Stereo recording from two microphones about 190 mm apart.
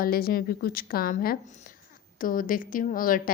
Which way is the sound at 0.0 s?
50° left (ahead or behind).